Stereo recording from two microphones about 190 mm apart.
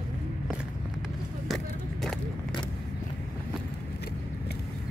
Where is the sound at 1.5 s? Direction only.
Centre (ahead or behind).